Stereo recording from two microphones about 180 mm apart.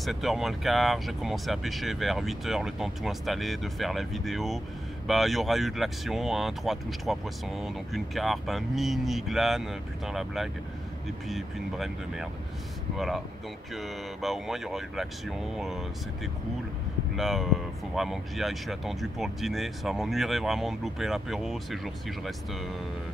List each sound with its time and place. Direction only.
0.0 s speech: centre (ahead or behind)
17.1 s speech: centre (ahead or behind)